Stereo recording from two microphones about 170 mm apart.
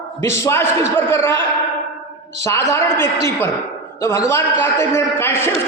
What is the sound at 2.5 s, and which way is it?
A man's voice, 15° left (ahead or behind).